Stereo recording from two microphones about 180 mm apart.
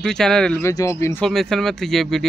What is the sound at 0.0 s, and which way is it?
Speech, 5° left (ahead or behind).